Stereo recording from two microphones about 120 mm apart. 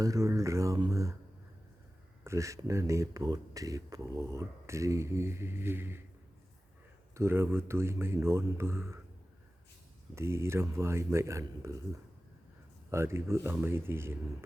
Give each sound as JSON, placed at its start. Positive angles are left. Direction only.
{"t": 0.0, "sound": "speech", "side_deg": -25}
{"t": 0.9, "sound": "a sound", "side_deg": -25}
{"t": 2.2, "sound": "speech", "side_deg": -25}
{"t": 7.1, "sound": "speech", "side_deg": -20}
{"t": 10.2, "sound": "speech", "side_deg": -20}
{"t": 12.9, "sound": "speech", "side_deg": -20}